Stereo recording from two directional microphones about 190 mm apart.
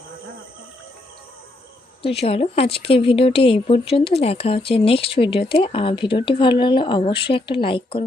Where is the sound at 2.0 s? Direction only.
30° left (ahead or behind).